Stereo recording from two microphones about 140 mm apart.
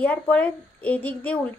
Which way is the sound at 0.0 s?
10° left (ahead or behind).